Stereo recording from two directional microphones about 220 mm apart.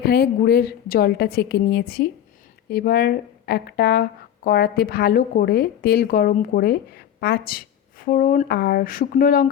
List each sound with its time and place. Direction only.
0.0 s a woman's voice: 45° left (ahead or behind)